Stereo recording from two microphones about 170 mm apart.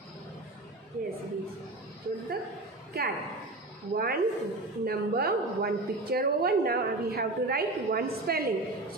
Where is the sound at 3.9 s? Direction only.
65° right (ahead or behind).